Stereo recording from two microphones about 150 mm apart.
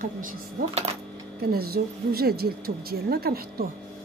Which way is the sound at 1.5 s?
90° right.